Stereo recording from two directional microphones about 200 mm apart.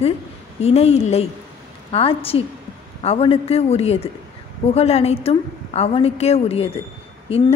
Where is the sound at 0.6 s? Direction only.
30° left (ahead or behind).